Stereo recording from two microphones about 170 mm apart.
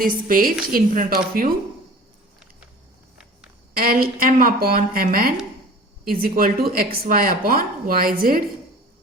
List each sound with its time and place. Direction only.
0.0 s a woman's voice: 55° right (ahead or behind)
3.8 s a woman's voice: 60° right (ahead or behind)